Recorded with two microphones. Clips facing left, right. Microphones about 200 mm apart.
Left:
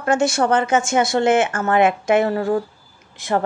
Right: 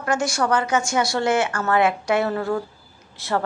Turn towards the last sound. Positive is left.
turn(degrees=15)  # may be behind; listen again after turning